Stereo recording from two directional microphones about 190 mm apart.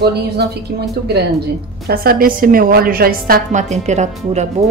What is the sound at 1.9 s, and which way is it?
A woman's voice, 50° right (ahead or behind).